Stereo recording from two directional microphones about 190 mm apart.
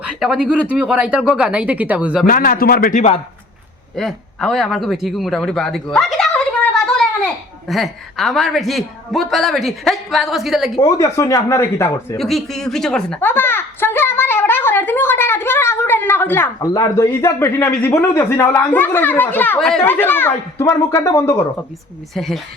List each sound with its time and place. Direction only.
0.0 s a woman's voice: 5° right (ahead or behind)
2.2 s a man's voice: 50° left (ahead or behind)
3.9 s a man's voice: centre (ahead or behind)
10.8 s speech: 20° left (ahead or behind)
12.1 s speech: centre (ahead or behind)
22.1 s a woman's voice: centre (ahead or behind)